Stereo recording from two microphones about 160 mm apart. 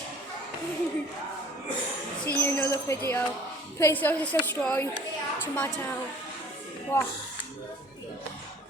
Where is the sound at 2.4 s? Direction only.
10° left (ahead or behind).